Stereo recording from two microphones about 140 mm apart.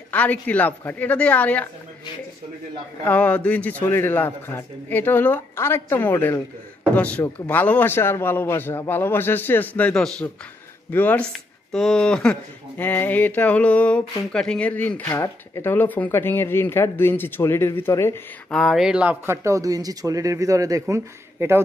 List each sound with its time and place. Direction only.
0.1 s speech: 10° left (ahead or behind)
3.1 s speech: 10° left (ahead or behind)
18.5 s speech: centre (ahead or behind); by 21.5 s 20° right (ahead or behind)